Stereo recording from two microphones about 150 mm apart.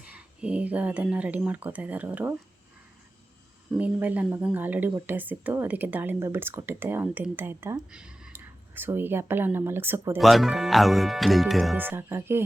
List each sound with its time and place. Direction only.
0.0 s speech: 10° right (ahead or behind)
3.8 s speech: 10° right (ahead or behind)
10.2 s speech: centre (ahead or behind)
11.8 s speech: 15° right (ahead or behind)